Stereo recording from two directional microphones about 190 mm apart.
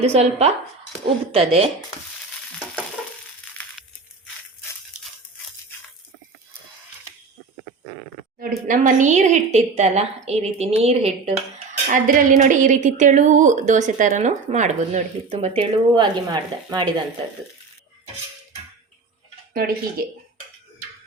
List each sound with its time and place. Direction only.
0.0 s a woman's voice: 35° right (ahead or behind)
8.4 s a woman's voice: 45° right (ahead or behind)
11.9 s a woman's voice: 45° right (ahead or behind); by 16.9 s 25° right (ahead or behind)
19.5 s speech: 50° right (ahead or behind)